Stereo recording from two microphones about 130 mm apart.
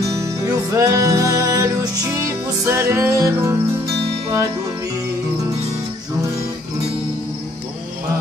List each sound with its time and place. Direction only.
0.0 s music: 25° right (ahead or behind)